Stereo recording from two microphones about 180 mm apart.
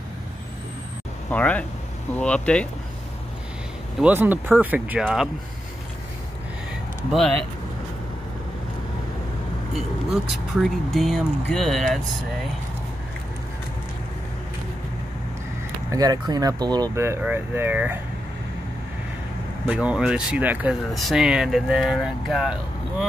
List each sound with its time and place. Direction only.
1.3 s speech: 5° left (ahead or behind)
4.0 s speech: 10° right (ahead or behind)
7.1 s speech: centre (ahead or behind)
9.8 s speech: centre (ahead or behind)
15.9 s speech: 20° right (ahead or behind)
19.6 s speech: 5° right (ahead or behind)